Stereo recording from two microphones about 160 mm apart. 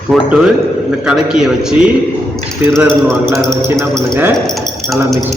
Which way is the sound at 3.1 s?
15° right (ahead or behind).